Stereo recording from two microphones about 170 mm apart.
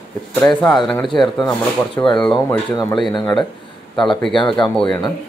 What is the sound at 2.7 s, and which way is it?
Speech, 20° left (ahead or behind).